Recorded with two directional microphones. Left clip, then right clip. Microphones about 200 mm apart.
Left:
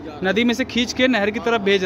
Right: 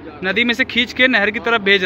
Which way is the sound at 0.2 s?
15° left (ahead or behind).